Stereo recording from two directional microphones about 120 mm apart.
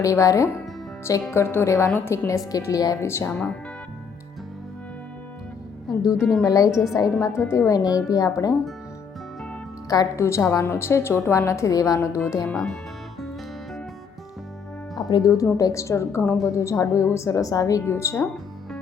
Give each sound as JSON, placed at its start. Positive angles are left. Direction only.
{"t": 0.0, "sound": "a woman's voice", "side_deg": 25}
{"t": 5.9, "sound": "a woman's voice", "side_deg": 30}
{"t": 9.9, "sound": "a woman's voice", "side_deg": 25}
{"t": 12.5, "sound": "speech", "side_deg": 5}
{"t": 14.9, "sound": "a woman's voice", "side_deg": 35}